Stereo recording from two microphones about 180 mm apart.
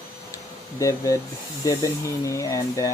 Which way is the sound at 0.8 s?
15° left (ahead or behind).